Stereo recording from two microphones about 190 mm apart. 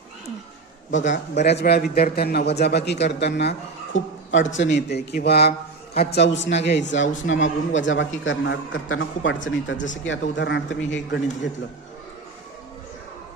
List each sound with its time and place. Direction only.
0.9 s speech: 70° left (ahead or behind)
6.2 s speech: 70° left (ahead or behind)